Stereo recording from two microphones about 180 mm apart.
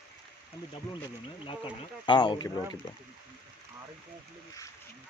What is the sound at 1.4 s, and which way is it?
Speech, 25° left (ahead or behind).